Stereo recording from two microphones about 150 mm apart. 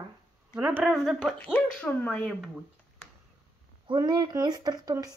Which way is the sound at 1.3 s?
10° left (ahead or behind).